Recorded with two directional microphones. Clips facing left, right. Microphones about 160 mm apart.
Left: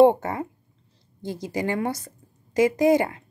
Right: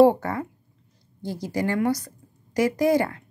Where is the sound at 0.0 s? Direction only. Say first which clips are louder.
Even; 20° left (ahead or behind).